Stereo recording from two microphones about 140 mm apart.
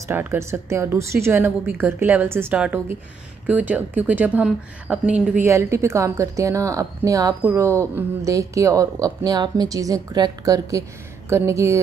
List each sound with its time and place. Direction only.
0.1 s a woman's voice: 15° right (ahead or behind)
5.4 s speech: 20° right (ahead or behind)